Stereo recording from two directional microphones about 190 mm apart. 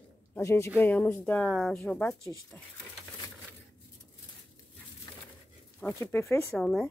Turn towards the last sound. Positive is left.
turn(degrees=5)  # may be behind; listen again after turning